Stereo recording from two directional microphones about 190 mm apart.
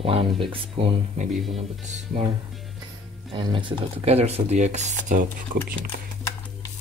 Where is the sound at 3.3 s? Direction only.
25° right (ahead or behind); by 5.2 s 40° right (ahead or behind).